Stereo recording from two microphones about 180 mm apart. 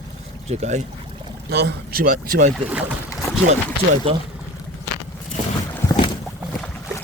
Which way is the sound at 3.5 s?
40° right (ahead or behind).